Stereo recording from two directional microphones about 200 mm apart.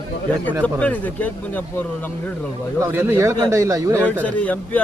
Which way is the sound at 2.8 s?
10° right (ahead or behind).